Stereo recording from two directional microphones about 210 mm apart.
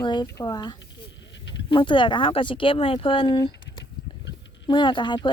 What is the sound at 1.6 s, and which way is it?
Speech, 25° left (ahead or behind).